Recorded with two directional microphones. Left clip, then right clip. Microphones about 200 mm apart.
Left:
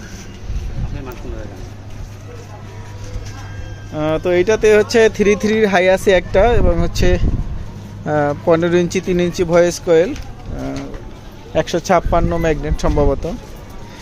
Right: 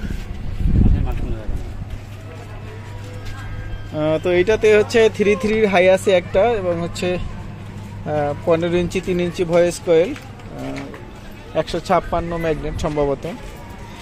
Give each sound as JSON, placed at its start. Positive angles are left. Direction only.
{"t": 3.9, "sound": "speech", "side_deg": 0}
{"t": 11.5, "sound": "speech", "side_deg": 30}